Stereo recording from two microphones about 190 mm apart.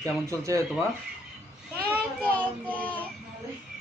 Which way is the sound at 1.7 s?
10° left (ahead or behind).